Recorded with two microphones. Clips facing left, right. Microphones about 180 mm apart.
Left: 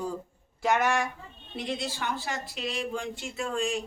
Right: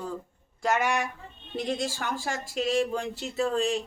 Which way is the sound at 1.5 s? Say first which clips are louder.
Right 3 dB; 40° right (ahead or behind).